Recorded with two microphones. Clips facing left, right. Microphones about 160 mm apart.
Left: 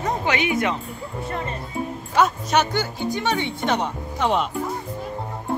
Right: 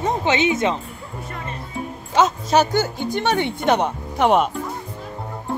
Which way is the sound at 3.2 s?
55° right (ahead or behind).